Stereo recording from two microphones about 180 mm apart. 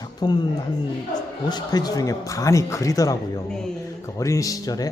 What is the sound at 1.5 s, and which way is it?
A man's voice, 20° left (ahead or behind).